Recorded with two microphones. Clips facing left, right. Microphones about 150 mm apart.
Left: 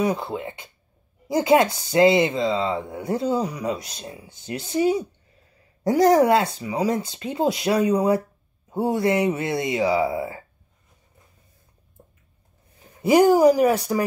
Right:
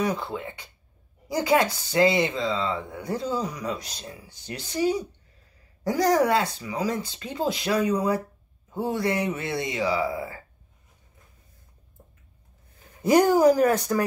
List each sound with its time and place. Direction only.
0.0 s speech: 25° left (ahead or behind)
13.0 s speech: 10° left (ahead or behind)